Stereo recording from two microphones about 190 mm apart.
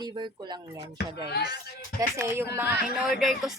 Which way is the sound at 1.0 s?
60° left (ahead or behind).